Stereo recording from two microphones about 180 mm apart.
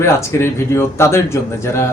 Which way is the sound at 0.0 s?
15° left (ahead or behind).